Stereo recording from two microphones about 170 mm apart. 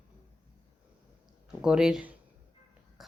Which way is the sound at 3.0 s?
Centre (ahead or behind).